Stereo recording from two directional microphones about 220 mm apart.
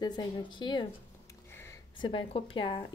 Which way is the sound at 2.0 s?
25° left (ahead or behind).